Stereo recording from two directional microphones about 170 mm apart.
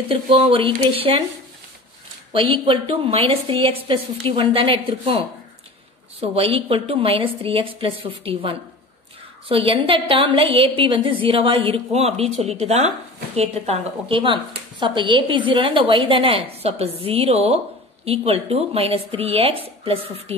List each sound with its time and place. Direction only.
0.1 s a woman's voice: 30° right (ahead or behind)
2.3 s a woman's voice: 30° right (ahead or behind)
6.2 s a woman's voice: 35° right (ahead or behind)